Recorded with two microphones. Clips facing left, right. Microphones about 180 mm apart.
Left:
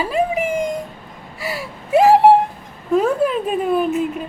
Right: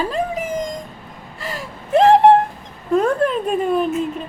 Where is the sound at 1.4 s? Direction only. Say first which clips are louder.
Left 3 dB; 10° left (ahead or behind).